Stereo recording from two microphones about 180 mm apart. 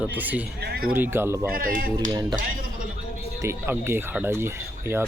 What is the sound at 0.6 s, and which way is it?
Speech, 60° right (ahead or behind).